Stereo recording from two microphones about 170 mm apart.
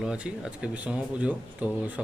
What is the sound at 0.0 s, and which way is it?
A man's voice, 5° right (ahead or behind).